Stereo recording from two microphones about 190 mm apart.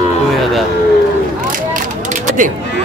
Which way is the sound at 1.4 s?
45° right (ahead or behind).